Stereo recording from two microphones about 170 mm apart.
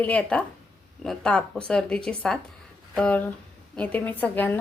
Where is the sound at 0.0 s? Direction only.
5° left (ahead or behind).